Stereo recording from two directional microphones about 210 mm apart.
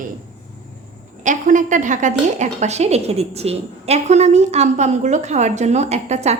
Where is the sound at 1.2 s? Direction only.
35° right (ahead or behind).